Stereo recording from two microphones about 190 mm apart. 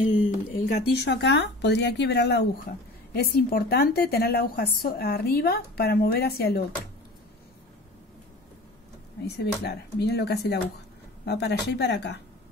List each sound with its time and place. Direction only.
0.7 s a woman's voice: 55° left (ahead or behind)
9.2 s a woman's voice: 60° left (ahead or behind)